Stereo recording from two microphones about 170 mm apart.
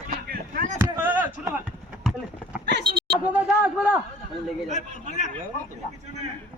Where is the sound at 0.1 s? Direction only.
60° right (ahead or behind).